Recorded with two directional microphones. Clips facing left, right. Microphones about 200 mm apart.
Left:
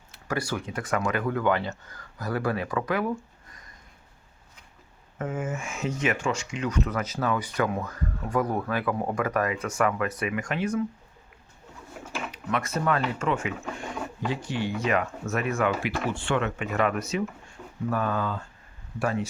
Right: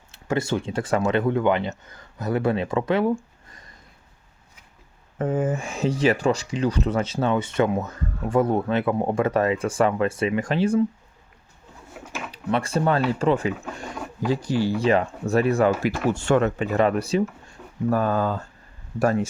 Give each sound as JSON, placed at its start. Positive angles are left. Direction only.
{"t": 0.1, "sound": "speech", "side_deg": -25}
{"t": 5.1, "sound": "speech", "side_deg": -35}
{"t": 12.3, "sound": "speech", "side_deg": -30}
{"t": 17.6, "sound": "a sound", "side_deg": 0}
{"t": 17.9, "sound": "speech", "side_deg": -40}